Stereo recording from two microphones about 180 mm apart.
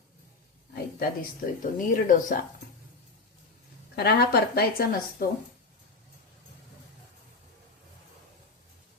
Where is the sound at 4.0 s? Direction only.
60° left (ahead or behind).